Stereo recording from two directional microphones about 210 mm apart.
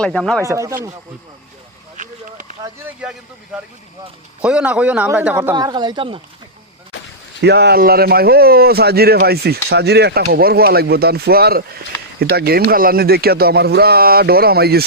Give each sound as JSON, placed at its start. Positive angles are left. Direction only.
{"t": 0.0, "sound": "a man's voice", "side_deg": 5}
{"t": 0.4, "sound": "speech", "side_deg": -15}
{"t": 2.0, "sound": "a sound", "side_deg": -35}
{"t": 4.4, "sound": "a man's voice", "side_deg": -5}
{"t": 5.5, "sound": "speech", "side_deg": -20}
{"t": 7.4, "sound": "a man's voice", "side_deg": -50}